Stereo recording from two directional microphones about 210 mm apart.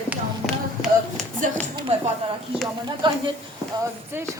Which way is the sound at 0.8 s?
Centre (ahead or behind).